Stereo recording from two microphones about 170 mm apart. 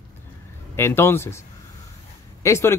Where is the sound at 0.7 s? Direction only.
15° left (ahead or behind).